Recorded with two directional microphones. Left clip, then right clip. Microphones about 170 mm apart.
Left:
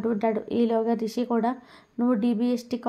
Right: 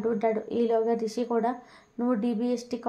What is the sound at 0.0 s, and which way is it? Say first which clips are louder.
Speech: left 1 dB; 30° left (ahead or behind).